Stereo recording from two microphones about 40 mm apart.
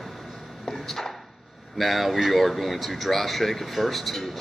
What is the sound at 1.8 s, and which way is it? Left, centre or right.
Speech, centre.